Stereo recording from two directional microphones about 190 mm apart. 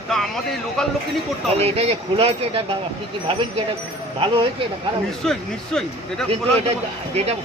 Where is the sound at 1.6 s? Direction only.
30° right (ahead or behind).